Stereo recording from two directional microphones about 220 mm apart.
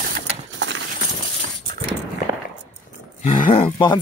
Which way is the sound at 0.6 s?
55° right (ahead or behind).